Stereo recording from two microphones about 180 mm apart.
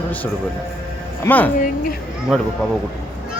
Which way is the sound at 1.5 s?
50° left (ahead or behind).